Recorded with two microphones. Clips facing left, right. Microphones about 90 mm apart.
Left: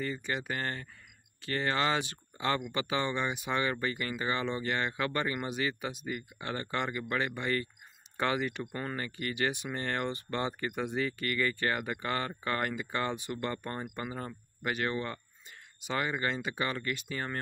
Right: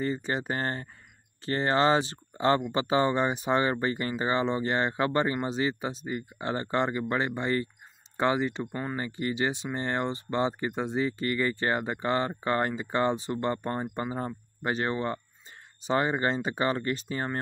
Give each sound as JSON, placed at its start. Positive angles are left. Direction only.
{"t": 0.0, "sound": "speech", "side_deg": -35}